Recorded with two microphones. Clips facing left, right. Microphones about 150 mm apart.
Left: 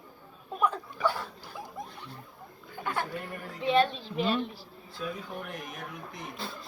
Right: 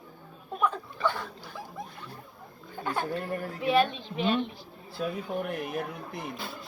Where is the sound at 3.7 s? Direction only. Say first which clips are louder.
Even; 5° right (ahead or behind).